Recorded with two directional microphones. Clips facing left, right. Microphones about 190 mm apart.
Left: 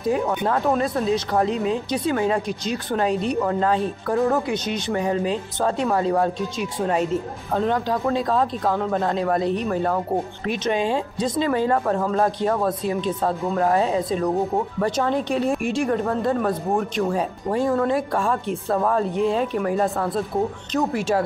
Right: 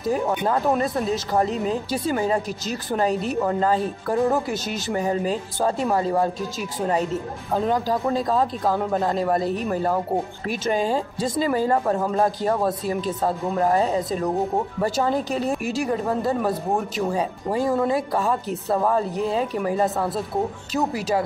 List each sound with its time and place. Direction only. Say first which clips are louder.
0.5 s a woman's voice: even; 5° right (ahead or behind)